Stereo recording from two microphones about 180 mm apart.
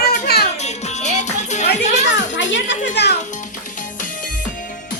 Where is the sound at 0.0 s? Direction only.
60° left (ahead or behind).